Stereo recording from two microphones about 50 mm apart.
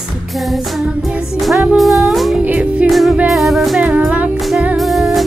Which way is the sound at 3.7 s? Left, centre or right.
Right.